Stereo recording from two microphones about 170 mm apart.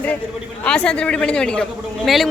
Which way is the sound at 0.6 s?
5° left (ahead or behind).